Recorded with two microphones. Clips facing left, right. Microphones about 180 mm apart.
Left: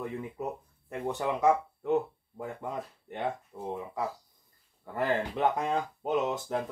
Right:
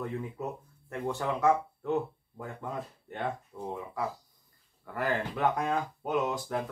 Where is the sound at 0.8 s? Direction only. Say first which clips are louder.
Left 1 dB; 15° left (ahead or behind).